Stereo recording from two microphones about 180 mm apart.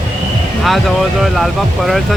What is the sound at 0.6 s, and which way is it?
Speech, centre (ahead or behind).